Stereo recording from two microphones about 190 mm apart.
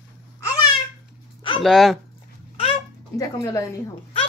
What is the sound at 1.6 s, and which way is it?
Speech, centre (ahead or behind).